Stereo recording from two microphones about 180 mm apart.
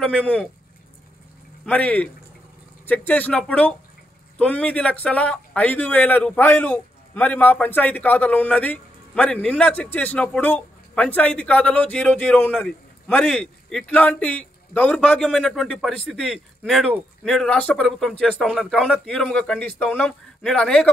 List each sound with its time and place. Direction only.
0.0 s speech: 5° left (ahead or behind)
1.7 s speech: 5° left (ahead or behind)